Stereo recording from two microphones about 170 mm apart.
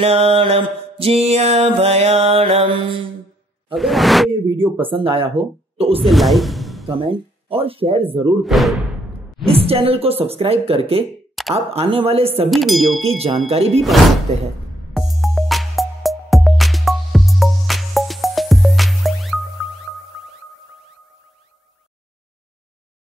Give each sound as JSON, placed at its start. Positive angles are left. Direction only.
{"t": 0.0, "sound": "music", "side_deg": -35}
{"t": 3.7, "sound": "whoosh", "side_deg": 0}
{"t": 4.3, "sound": "speech", "side_deg": -30}
{"t": 4.7, "sound": "music", "side_deg": -30}
{"t": 6.0, "sound": "music", "side_deg": 0}
{"t": 7.0, "sound": "music", "side_deg": -30}
{"t": 8.4, "sound": "whoosh", "side_deg": 0}
{"t": 9.5, "sound": "music", "side_deg": -35}
{"t": 12.4, "sound": "whoosh", "side_deg": 0}
{"t": 13.0, "sound": "music", "side_deg": -35}
{"t": 15.0, "sound": "music", "side_deg": 0}